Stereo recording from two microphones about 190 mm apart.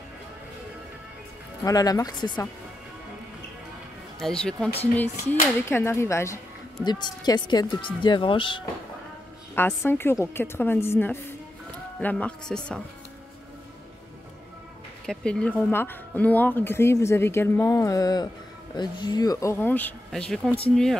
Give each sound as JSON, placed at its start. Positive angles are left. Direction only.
{"t": 1.6, "sound": "speech", "side_deg": 20}
{"t": 4.2, "sound": "speech", "side_deg": 5}
{"t": 9.6, "sound": "speech", "side_deg": 10}
{"t": 15.0, "sound": "speech", "side_deg": 5}